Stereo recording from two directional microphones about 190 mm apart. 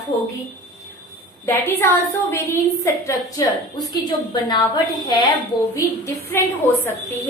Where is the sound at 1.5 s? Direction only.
10° left (ahead or behind).